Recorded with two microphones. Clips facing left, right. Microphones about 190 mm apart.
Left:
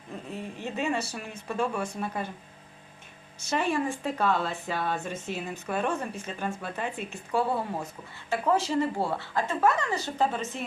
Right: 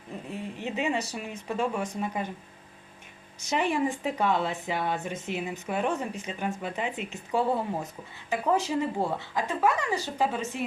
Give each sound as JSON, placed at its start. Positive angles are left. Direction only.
{"t": 0.1, "sound": "speech", "side_deg": -15}
{"t": 3.4, "sound": "speech", "side_deg": -15}